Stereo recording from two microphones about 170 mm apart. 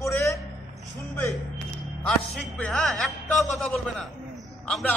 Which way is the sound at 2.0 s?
5° left (ahead or behind).